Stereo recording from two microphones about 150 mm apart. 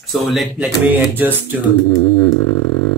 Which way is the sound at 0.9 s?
10° right (ahead or behind).